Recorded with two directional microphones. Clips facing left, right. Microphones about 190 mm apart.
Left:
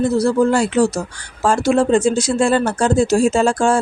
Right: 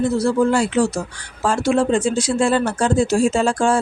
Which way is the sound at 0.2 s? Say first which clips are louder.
Left 2 dB; 40° left (ahead or behind).